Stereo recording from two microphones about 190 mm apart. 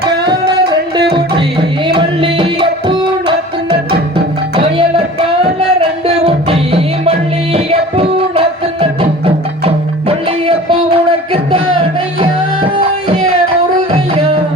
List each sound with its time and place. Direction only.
1.9 s music: 25° right (ahead or behind)